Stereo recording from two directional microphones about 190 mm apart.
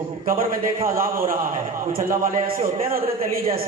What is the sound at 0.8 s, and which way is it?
A man's voice, 50° right (ahead or behind).